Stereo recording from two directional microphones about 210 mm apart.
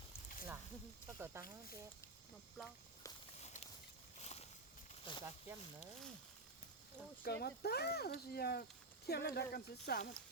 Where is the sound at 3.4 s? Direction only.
30° left (ahead or behind).